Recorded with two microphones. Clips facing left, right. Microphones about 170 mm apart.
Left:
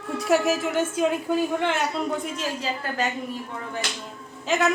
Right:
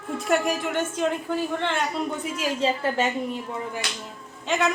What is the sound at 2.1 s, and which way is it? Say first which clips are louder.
Speech: left 1 dB; centre (ahead or behind).